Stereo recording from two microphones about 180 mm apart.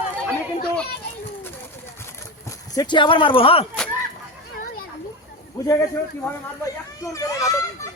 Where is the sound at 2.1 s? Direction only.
20° left (ahead or behind).